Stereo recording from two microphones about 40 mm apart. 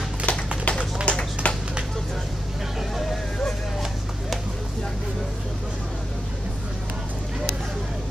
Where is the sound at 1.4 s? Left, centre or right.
Left.